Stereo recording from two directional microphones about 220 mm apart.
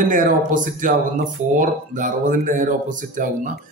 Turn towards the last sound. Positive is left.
turn(degrees=-35)  # may be behind; listen again after turning